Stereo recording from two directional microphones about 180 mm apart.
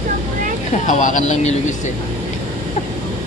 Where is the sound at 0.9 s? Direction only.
45° left (ahead or behind).